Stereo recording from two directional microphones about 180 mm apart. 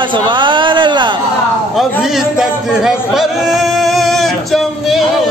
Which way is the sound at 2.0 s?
Centre (ahead or behind).